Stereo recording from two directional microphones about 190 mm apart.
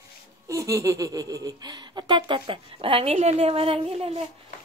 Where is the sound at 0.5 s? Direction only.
15° right (ahead or behind).